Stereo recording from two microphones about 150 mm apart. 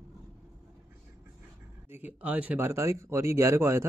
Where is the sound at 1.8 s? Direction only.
10° right (ahead or behind).